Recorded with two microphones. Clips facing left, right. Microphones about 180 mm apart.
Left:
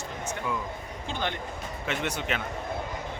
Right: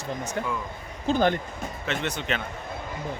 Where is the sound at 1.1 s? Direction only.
45° right (ahead or behind).